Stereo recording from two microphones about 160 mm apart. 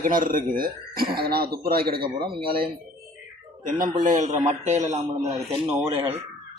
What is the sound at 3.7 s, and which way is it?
Speech, 55° right (ahead or behind).